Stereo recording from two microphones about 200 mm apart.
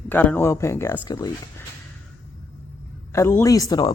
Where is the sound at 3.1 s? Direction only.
15° left (ahead or behind).